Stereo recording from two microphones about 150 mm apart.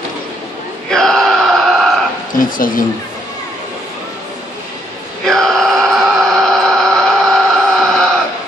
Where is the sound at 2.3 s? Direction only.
65° left (ahead or behind).